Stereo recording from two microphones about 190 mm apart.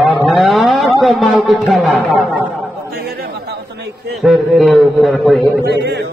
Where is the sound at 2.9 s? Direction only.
60° right (ahead or behind).